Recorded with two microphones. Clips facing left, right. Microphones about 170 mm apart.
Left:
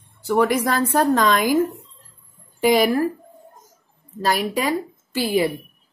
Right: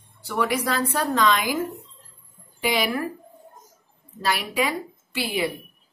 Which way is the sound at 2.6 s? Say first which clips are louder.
Left 8 dB; 45° left (ahead or behind).